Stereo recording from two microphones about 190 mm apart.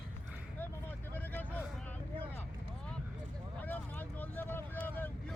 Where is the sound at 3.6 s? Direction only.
10° left (ahead or behind).